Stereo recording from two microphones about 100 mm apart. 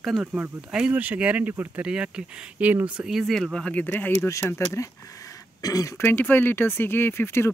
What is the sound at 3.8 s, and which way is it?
Speech, 20° left (ahead or behind).